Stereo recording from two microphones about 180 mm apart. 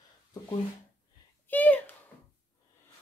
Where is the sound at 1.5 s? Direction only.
10° left (ahead or behind).